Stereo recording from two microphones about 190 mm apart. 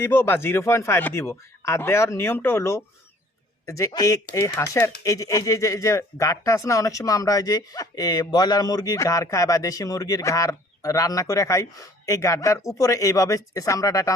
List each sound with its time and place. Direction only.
0.0 s speech: 10° left (ahead or behind)